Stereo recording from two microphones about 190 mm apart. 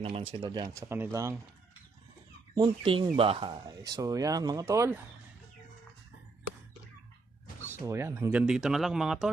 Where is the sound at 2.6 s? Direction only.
25° right (ahead or behind).